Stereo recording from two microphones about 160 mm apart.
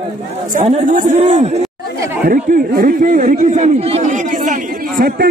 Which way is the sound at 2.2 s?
60° right (ahead or behind).